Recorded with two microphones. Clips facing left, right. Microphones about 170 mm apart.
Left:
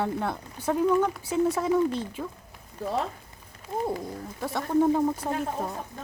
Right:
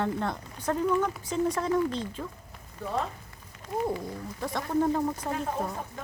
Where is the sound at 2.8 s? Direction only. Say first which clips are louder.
Left 3 dB; 35° left (ahead or behind).